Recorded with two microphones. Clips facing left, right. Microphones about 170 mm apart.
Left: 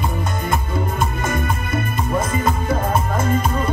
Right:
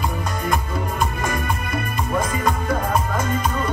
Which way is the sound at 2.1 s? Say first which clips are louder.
Left 1 dB; 25° left (ahead or behind).